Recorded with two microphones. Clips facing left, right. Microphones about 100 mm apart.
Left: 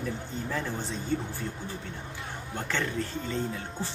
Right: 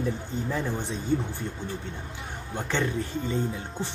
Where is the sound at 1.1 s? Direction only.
15° right (ahead or behind).